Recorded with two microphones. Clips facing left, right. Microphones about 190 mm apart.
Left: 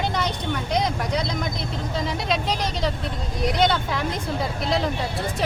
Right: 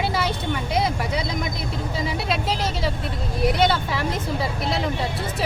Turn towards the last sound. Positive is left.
turn(degrees=0)  # may be behind; listen again after turning